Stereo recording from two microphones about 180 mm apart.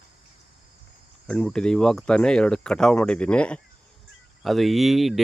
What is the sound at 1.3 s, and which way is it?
Speech, 5° left (ahead or behind).